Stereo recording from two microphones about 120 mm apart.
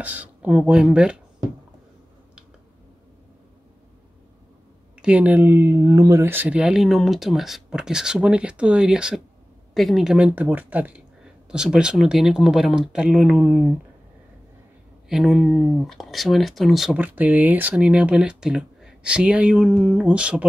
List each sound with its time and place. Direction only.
0.0 s speech: 15° right (ahead or behind)
5.0 s speech: 10° right (ahead or behind)
6.6 s speech: centre (ahead or behind)
15.0 s speech: 5° right (ahead or behind)